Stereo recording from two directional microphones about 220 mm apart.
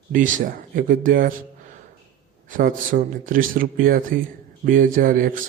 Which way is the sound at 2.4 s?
35° right (ahead or behind).